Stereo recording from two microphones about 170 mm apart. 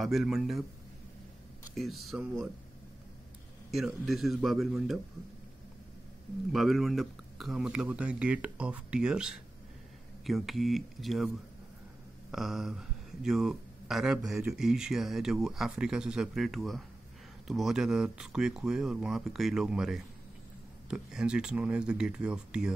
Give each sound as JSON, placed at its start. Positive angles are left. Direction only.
{"t": 0.0, "sound": "speech", "side_deg": 0}
{"t": 1.8, "sound": "speech", "side_deg": 0}
{"t": 3.7, "sound": "speech", "side_deg": 0}
{"t": 6.5, "sound": "speech", "side_deg": 0}